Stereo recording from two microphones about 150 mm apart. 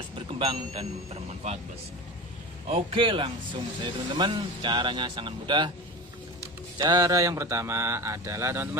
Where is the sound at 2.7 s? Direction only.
35° right (ahead or behind).